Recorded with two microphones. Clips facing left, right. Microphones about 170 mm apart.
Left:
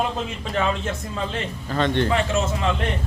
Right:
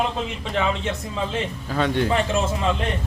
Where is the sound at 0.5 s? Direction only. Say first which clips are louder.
Even; centre (ahead or behind).